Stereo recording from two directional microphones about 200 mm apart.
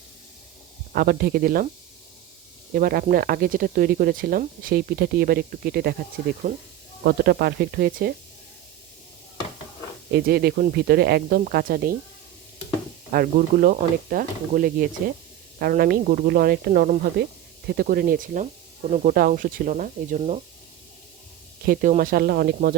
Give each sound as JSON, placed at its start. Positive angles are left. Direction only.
{"t": 0.9, "sound": "speech", "side_deg": -50}
{"t": 2.7, "sound": "speech", "side_deg": -45}
{"t": 6.5, "sound": "speech", "side_deg": -40}
{"t": 10.2, "sound": "speech", "side_deg": -50}
{"t": 13.1, "sound": "speech", "side_deg": -45}
{"t": 21.7, "sound": "speech", "side_deg": -45}